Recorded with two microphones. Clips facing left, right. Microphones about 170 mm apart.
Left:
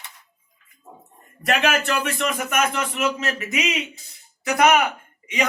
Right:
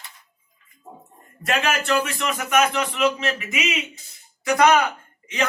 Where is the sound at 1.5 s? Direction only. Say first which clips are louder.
Left 1 dB; 60° left (ahead or behind).